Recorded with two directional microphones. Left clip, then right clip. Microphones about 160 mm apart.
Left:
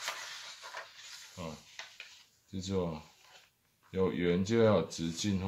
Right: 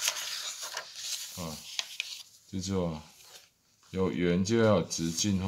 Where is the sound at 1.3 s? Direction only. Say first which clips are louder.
Right 4 dB; 30° right (ahead or behind).